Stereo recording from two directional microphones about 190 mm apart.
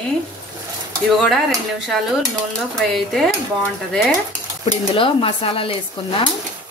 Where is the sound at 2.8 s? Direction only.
Centre (ahead or behind).